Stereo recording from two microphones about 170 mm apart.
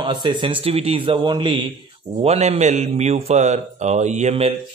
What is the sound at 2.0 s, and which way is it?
A man's voice, 40° right (ahead or behind).